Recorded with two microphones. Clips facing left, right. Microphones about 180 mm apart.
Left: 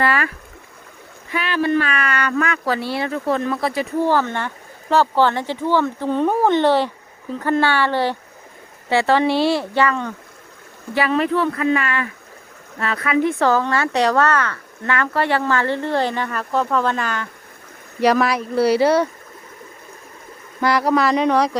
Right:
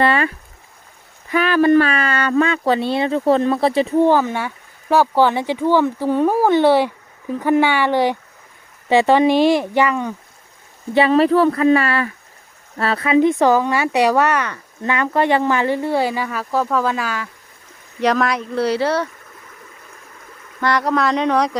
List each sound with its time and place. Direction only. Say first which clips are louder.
0.0 s a sound: right 3 dB; 25° right (ahead or behind)
1.3 s speech: right 6 dB; 45° right (ahead or behind); by 10.1 s 15° right (ahead or behind)
10.9 s speech: right 5 dB; 30° right (ahead or behind); by 19.0 s 10° left (ahead or behind)
20.6 s speech: left 1 dB; 10° left (ahead or behind)